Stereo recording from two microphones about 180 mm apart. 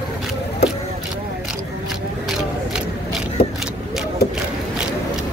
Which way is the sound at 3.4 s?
60° left (ahead or behind).